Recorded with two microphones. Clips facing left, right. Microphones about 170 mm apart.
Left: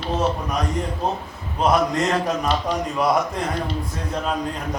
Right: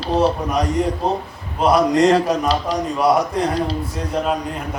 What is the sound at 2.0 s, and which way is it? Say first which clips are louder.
Speech: right 7 dB; 35° right (ahead or behind).